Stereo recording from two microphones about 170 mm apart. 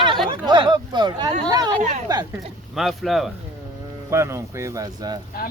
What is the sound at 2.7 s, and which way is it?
Speech, centre (ahead or behind).